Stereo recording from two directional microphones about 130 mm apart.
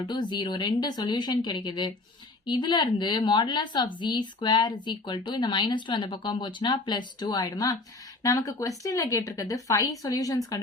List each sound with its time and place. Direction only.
0.1 s a woman's voice: 35° left (ahead or behind)